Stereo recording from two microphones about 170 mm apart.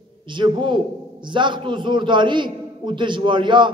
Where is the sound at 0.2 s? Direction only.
30° right (ahead or behind).